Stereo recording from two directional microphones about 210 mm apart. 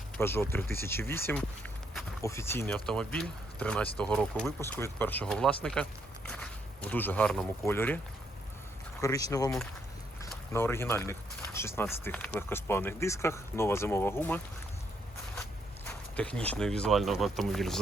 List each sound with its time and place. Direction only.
0.2 s speech: 10° left (ahead or behind)
9.0 s speech: 15° left (ahead or behind)
15.9 s a sound: 5° left (ahead or behind)
16.5 s speech: 5° left (ahead or behind)